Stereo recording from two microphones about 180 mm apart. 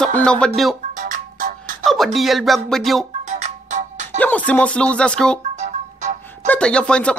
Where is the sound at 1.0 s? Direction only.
50° right (ahead or behind).